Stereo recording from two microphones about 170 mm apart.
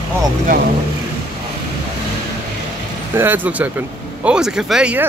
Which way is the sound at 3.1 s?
10° right (ahead or behind).